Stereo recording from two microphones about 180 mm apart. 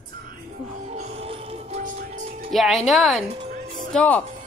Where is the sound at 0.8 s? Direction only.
40° right (ahead or behind).